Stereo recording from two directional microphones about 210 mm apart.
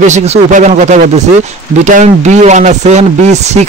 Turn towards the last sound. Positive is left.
turn(degrees=-30)  # may be behind; listen again after turning